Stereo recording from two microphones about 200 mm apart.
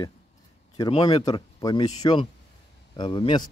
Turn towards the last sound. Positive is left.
turn(degrees=25)  # may be behind; listen again after turning